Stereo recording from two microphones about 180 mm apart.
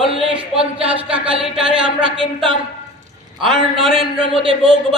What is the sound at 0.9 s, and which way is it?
Speech, 5° right (ahead or behind).